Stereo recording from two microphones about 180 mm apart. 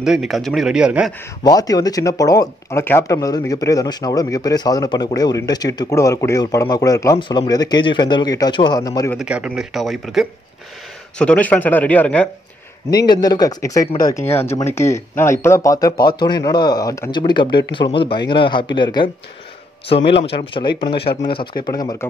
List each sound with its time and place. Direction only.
0.0 s a man's voice: centre (ahead or behind)
1.4 s speech: 20° left (ahead or behind)
9.2 s a man's voice: 5° right (ahead or behind)
12.9 s speech: 25° left (ahead or behind)
20.2 s speech: 30° left (ahead or behind)